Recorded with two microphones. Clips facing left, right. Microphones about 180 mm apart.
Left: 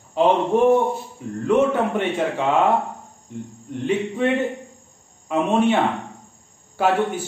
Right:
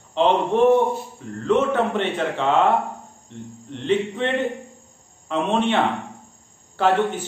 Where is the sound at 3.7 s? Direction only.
10° left (ahead or behind).